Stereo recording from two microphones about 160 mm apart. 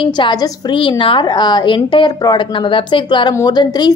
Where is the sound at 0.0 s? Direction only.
30° left (ahead or behind).